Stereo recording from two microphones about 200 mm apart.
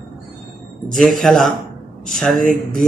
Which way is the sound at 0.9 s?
Centre (ahead or behind).